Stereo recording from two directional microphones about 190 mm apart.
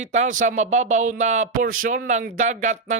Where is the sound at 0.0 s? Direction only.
40° right (ahead or behind).